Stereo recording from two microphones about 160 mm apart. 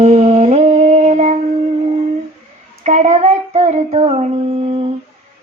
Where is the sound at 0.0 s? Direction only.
45° right (ahead or behind).